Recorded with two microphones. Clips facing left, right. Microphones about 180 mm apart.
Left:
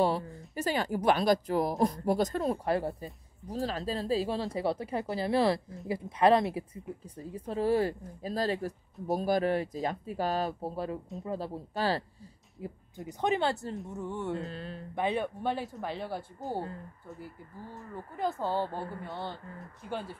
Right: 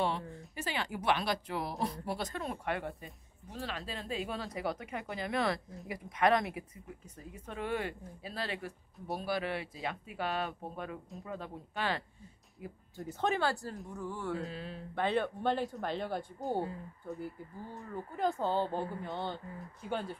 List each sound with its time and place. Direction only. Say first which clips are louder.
0.6 s speech: left 7 dB; 40° left (ahead or behind)
12.6 s speech: left 2 dB; 20° left (ahead or behind)
14.3 s speech: left 2 dB; centre (ahead or behind)
15.0 s speech: left 1 dB; 15° left (ahead or behind)